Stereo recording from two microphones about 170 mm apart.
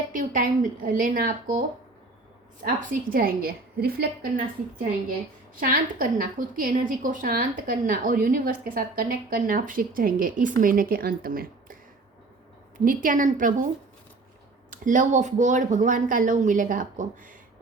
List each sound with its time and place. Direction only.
0.1 s speech: 55° right (ahead or behind)
2.6 s a woman's voice: 60° right (ahead or behind)
5.5 s a woman's voice: 55° right (ahead or behind)
14.7 s speech: 50° right (ahead or behind)